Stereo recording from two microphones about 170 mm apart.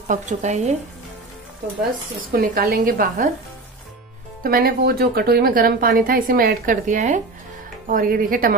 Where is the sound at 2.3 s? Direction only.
60° right (ahead or behind).